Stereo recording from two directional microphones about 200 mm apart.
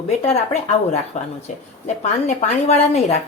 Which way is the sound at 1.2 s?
35° left (ahead or behind).